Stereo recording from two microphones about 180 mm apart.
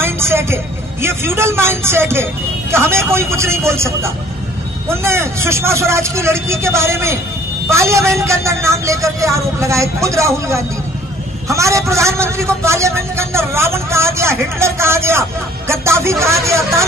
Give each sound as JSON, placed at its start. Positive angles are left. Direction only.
{"t": 0.0, "sound": "a man's voice", "side_deg": -15}